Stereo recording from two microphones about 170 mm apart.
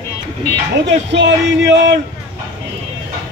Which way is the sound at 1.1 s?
90° right.